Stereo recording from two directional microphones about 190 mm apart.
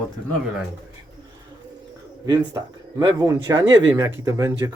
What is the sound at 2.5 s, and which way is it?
Speech, 15° right (ahead or behind).